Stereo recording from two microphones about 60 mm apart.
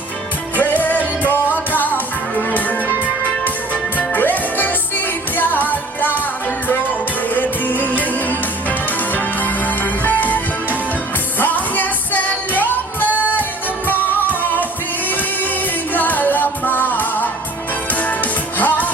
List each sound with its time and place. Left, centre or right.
1.5 s music: left
3.9 s music: left
7.3 s music: left